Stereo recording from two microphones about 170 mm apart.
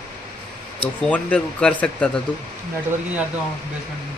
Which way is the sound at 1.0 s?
5° left (ahead or behind).